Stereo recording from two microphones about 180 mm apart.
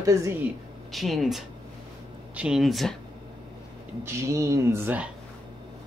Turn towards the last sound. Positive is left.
turn(degrees=-10)  # may be behind; listen again after turning